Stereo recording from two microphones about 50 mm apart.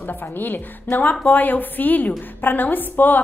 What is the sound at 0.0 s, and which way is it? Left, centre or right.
A woman's voice, left.